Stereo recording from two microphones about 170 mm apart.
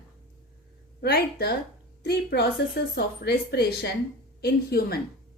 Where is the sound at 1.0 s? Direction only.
70° left (ahead or behind).